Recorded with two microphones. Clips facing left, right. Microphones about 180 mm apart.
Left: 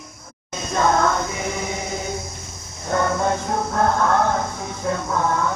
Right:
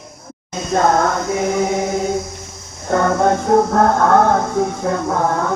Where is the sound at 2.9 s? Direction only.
55° right (ahead or behind).